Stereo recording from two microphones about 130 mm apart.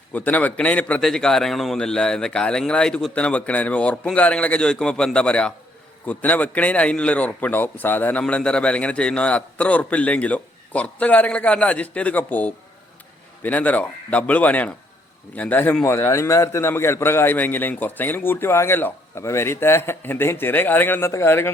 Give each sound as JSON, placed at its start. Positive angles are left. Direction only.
{"t": 0.1, "sound": "a man's voice", "side_deg": 15}